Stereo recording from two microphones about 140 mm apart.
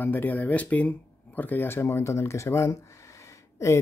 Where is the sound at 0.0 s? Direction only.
15° left (ahead or behind).